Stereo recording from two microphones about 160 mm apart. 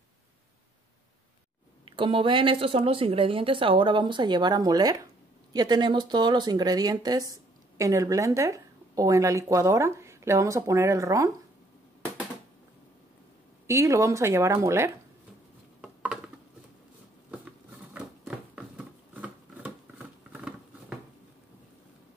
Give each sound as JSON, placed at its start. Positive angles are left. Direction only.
{"t": 1.9, "sound": "speech", "side_deg": -30}
{"t": 13.7, "sound": "speech", "side_deg": -20}
{"t": 15.8, "sound": "dishes", "side_deg": -5}
{"t": 17.9, "sound": "a sound", "side_deg": -10}